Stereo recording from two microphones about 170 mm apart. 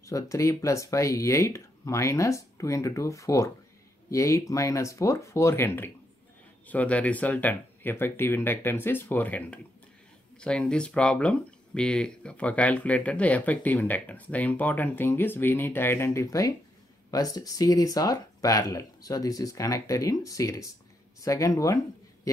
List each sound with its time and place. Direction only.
0.0 s speech: 20° left (ahead or behind)